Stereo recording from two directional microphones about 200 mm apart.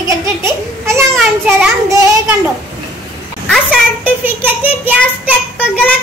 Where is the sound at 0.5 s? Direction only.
15° right (ahead or behind).